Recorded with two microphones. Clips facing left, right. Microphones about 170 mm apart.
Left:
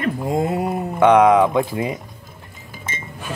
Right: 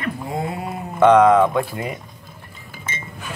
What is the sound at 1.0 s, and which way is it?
Speech, 10° left (ahead or behind).